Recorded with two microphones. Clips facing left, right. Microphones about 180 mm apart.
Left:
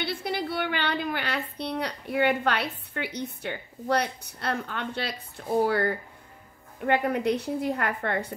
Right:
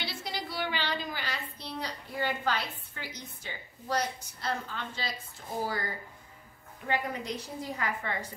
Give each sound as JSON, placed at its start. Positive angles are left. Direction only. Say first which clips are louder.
{"t": 0.0, "sound": "a woman's voice", "louder": "left 8 dB", "side_deg": 60}